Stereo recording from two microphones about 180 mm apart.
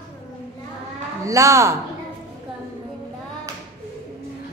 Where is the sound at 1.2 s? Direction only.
15° right (ahead or behind).